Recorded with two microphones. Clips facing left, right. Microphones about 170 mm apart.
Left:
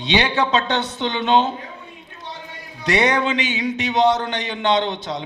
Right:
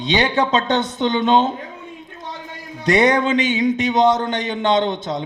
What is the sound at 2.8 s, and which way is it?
A man's voice, 45° right (ahead or behind).